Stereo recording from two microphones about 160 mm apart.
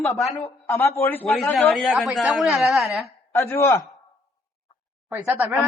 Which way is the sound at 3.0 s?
15° left (ahead or behind).